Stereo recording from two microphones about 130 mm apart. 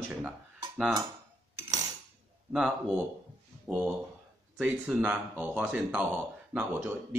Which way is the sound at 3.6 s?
10° right (ahead or behind).